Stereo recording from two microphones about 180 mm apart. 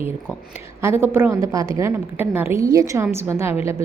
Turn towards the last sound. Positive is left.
turn(degrees=-15)  # may be behind; listen again after turning